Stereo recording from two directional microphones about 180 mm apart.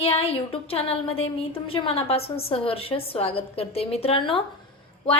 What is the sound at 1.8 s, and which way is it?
A woman's voice, 35° left (ahead or behind).